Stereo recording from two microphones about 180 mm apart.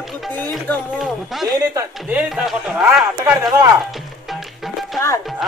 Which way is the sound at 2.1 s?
5° right (ahead or behind).